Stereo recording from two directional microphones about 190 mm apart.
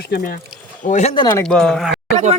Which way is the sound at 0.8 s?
40° left (ahead or behind).